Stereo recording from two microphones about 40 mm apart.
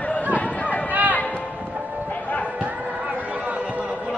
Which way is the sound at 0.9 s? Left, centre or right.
Right.